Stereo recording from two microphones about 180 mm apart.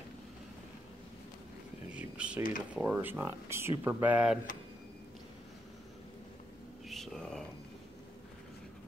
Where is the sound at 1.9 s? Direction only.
5° right (ahead or behind).